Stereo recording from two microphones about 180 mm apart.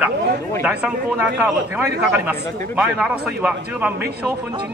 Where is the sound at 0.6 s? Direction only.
10° right (ahead or behind).